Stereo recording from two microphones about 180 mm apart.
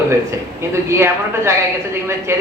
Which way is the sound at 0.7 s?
15° right (ahead or behind).